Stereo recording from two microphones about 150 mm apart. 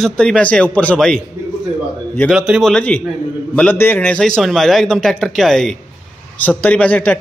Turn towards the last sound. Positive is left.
turn(degrees=10)  # may be behind; listen again after turning